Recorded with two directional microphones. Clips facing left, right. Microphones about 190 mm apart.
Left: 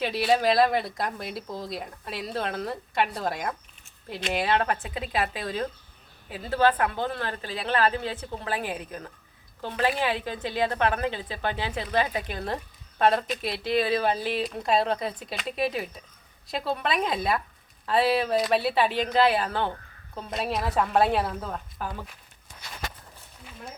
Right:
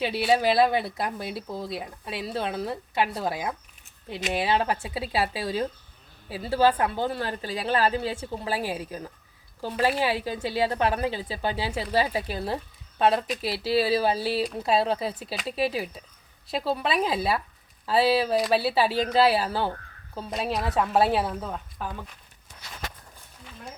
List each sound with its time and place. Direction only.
0.0 s a woman's voice: 5° right (ahead or behind)